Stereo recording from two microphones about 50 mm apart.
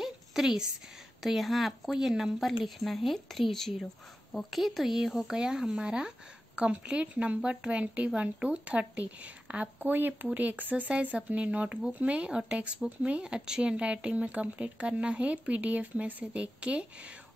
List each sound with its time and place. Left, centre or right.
0.0 s a sound: centre
1.2 s speech: centre
2.4 s speech: centre; by 16.8 s right